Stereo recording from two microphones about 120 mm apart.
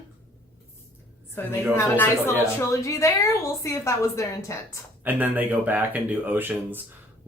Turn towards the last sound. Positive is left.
turn(degrees=-15)  # may be behind; listen again after turning